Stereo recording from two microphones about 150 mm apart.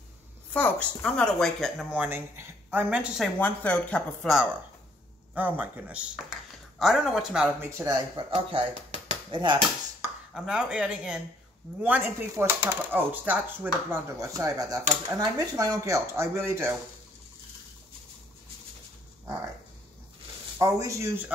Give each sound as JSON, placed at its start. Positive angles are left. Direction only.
{"t": 0.5, "sound": "speech", "side_deg": 10}
{"t": 3.3, "sound": "speech", "side_deg": 10}
{"t": 5.3, "sound": "speech", "side_deg": -10}
{"t": 7.4, "sound": "speech", "side_deg": -15}
{"t": 10.3, "sound": "speech", "side_deg": -5}
{"t": 20.5, "sound": "speech", "side_deg": -20}